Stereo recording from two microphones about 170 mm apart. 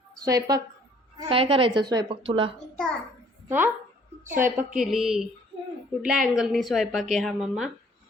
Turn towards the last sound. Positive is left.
turn(degrees=0)  # may be behind; listen again after turning